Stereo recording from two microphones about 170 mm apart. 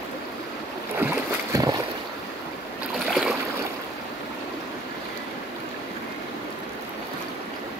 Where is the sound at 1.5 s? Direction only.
20° right (ahead or behind).